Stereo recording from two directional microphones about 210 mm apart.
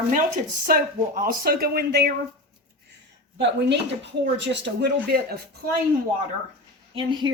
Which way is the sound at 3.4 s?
55° right (ahead or behind).